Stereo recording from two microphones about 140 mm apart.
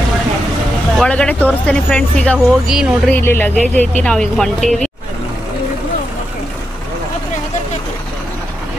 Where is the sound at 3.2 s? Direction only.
15° left (ahead or behind).